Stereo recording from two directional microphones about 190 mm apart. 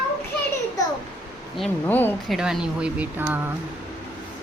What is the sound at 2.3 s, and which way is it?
Speech, 5° right (ahead or behind).